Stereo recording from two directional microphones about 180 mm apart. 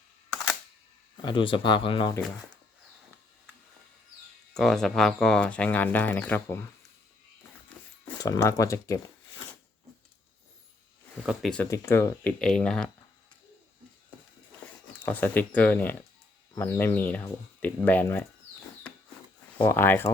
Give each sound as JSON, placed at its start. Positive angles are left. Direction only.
{"t": 1.1, "sound": "speech", "side_deg": 25}
{"t": 4.5, "sound": "speech", "side_deg": 0}
{"t": 8.2, "sound": "speech", "side_deg": 20}
{"t": 11.3, "sound": "speech", "side_deg": 5}
{"t": 11.7, "sound": "speech", "side_deg": 15}
{"t": 12.4, "sound": "speech", "side_deg": 5}
{"t": 15.0, "sound": "speech", "side_deg": 10}
{"t": 19.5, "sound": "speech", "side_deg": 10}